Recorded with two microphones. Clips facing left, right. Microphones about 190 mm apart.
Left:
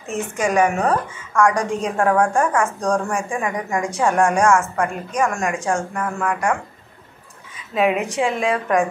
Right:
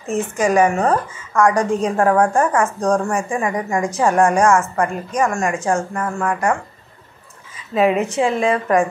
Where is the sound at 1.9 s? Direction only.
Centre (ahead or behind).